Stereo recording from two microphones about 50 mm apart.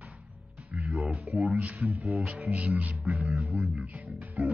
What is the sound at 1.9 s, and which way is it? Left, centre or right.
Music, centre.